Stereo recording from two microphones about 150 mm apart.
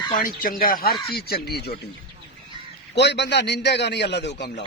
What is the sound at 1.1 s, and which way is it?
Speech, 90° left.